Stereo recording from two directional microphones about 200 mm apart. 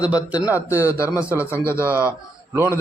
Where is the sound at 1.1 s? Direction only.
5° right (ahead or behind).